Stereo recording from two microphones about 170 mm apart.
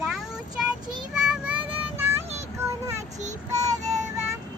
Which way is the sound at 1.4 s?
10° right (ahead or behind).